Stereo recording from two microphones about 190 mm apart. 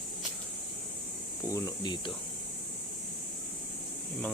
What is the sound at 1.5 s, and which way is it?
Speech, 20° left (ahead or behind).